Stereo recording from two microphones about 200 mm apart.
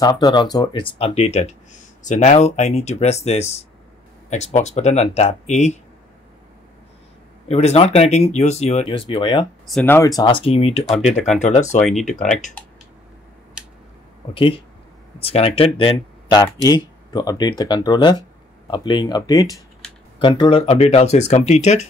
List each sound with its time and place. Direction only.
0.0 s speech: 20° left (ahead or behind)
7.4 s speech: 30° left (ahead or behind)
9.7 s speech: 5° left (ahead or behind); by 11.9 s 35° left (ahead or behind)
11.9 s speech: centre (ahead or behind)
12.2 s speech: 40° left (ahead or behind)
15.1 s speech: 30° left (ahead or behind)